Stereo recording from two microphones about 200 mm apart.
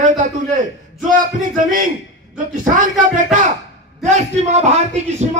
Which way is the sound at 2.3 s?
40° right (ahead or behind).